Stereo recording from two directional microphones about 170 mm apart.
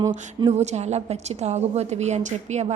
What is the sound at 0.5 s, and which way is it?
A woman's voice, 40° right (ahead or behind).